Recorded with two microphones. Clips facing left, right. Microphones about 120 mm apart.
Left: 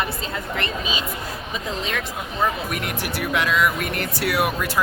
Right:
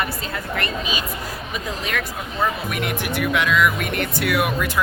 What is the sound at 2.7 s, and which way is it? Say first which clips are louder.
Speech: right 2 dB; 35° left (ahead or behind).